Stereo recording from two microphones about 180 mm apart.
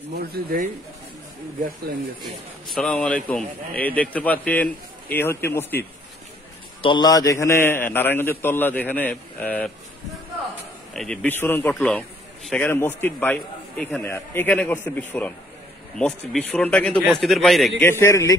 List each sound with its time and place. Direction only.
0.3 s speech: 55° right (ahead or behind)
2.2 s a man's voice: 5° left (ahead or behind)
6.8 s a man's voice: 25° left (ahead or behind); by 9.7 s 5° left (ahead or behind)
10.9 s a man's voice: 5° left (ahead or behind)
17.7 s a man's voice: 15° left (ahead or behind)